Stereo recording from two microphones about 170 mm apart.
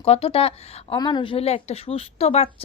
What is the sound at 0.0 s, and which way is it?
A woman's voice, 35° left (ahead or behind).